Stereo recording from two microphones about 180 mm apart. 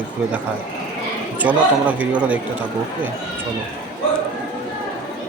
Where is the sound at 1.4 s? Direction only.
10° right (ahead or behind).